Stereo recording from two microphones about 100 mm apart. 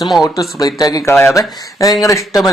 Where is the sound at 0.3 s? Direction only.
40° left (ahead or behind).